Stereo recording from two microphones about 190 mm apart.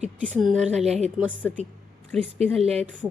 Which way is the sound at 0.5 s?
35° right (ahead or behind).